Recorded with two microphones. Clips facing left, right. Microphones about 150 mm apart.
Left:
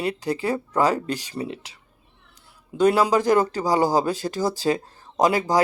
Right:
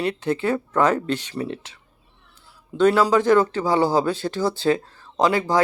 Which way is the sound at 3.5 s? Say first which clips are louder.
Right 1 dB; 40° left (ahead or behind).